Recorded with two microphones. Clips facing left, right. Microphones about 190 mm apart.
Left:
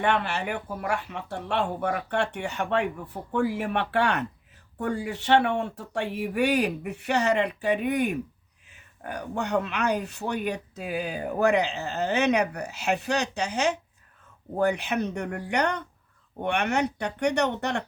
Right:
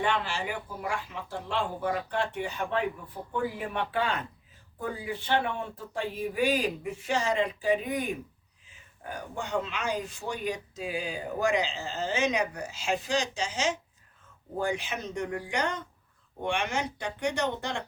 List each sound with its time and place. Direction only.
0.0 s speech: 60° left (ahead or behind)